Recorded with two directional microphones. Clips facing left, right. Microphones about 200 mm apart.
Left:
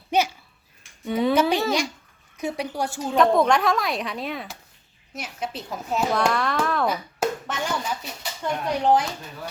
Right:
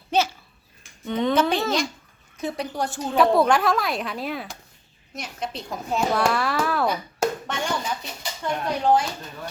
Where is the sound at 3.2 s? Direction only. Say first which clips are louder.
Even; 5° right (ahead or behind).